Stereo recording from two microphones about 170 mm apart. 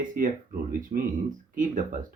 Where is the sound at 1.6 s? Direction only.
50° right (ahead or behind).